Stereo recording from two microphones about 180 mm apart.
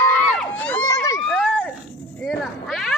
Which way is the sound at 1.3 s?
5° left (ahead or behind).